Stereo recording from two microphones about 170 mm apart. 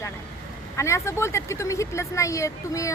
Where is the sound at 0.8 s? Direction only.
15° left (ahead or behind).